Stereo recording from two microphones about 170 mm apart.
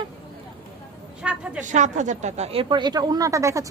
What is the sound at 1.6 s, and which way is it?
Speech, 45° right (ahead or behind).